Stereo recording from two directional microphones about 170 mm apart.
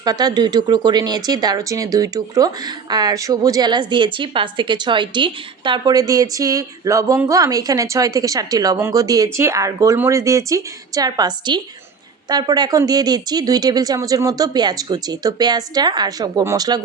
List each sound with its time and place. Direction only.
0.0 s speech: 25° right (ahead or behind)